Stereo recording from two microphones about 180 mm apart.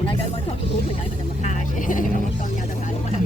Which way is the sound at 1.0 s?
40° left (ahead or behind).